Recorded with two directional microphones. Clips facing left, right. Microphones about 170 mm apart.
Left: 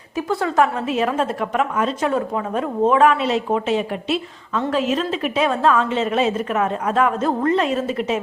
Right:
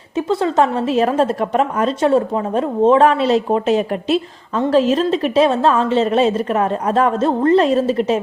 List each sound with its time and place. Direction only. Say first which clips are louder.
0.2 s a woman's voice: right 3 dB; 20° right (ahead or behind)